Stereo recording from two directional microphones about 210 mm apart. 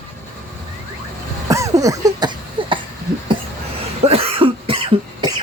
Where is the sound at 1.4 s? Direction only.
15° right (ahead or behind).